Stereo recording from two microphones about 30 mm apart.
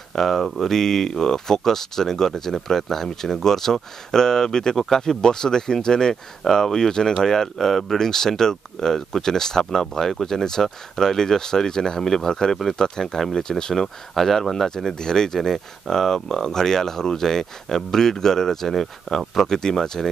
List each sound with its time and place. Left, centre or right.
0.2 s speech: centre
4.7 s speech: centre
5.0 s speech: left
7.6 s speech: centre
8.0 s speech: centre
14.1 s speech: centre